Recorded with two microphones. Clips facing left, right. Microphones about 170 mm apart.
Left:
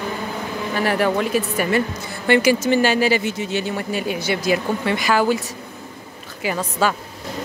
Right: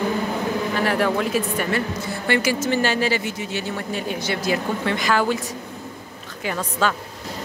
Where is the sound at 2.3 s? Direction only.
15° left (ahead or behind).